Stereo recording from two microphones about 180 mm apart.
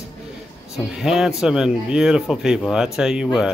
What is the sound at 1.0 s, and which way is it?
Speech, 5° right (ahead or behind).